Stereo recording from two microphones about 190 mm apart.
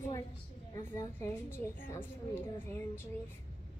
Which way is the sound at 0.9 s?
15° left (ahead or behind).